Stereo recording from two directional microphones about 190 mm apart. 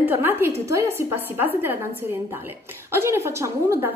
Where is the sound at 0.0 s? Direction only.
10° right (ahead or behind).